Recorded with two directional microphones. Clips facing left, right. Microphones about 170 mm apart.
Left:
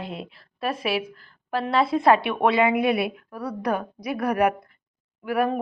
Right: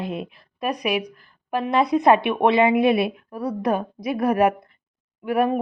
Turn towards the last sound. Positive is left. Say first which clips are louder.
# right 3 dB
turn(degrees=-25)  # may be behind; listen again after turning